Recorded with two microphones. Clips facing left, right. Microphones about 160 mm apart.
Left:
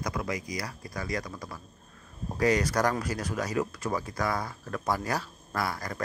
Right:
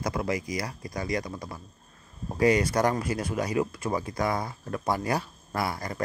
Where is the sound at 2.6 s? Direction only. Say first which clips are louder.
Right 2 dB; 30° right (ahead or behind).